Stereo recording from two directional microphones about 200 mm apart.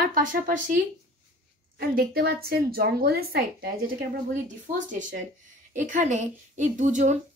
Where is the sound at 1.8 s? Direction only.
50° right (ahead or behind).